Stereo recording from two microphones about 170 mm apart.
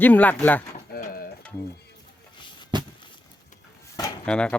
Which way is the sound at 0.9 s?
60° left (ahead or behind).